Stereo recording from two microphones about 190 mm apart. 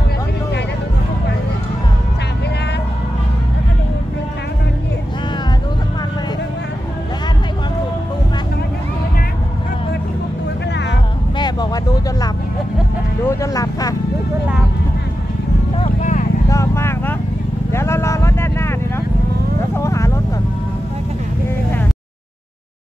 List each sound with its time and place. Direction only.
11.3 s vehicle: 20° left (ahead or behind)
13.3 s vehicle: 15° left (ahead or behind)
15.8 s vehicle: 40° left (ahead or behind)
16.4 s vehicle: 15° left (ahead or behind)